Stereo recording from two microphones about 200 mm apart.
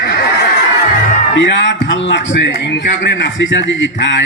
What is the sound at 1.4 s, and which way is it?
A man's voice, 65° left (ahead or behind).